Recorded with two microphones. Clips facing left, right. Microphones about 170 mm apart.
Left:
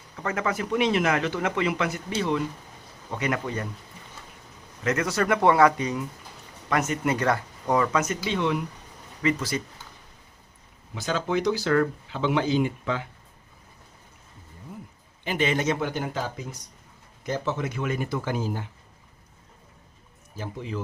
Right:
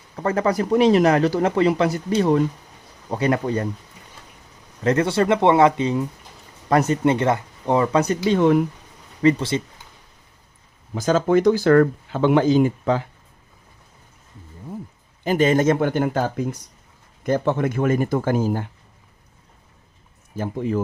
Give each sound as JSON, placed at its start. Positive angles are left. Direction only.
{"t": 0.2, "sound": "speech", "side_deg": -35}
{"t": 4.8, "sound": "speech", "side_deg": -30}
{"t": 9.2, "sound": "speech", "side_deg": -25}
{"t": 10.9, "sound": "speech", "side_deg": -45}
{"t": 15.2, "sound": "speech", "side_deg": -40}
{"t": 20.3, "sound": "speech", "side_deg": -50}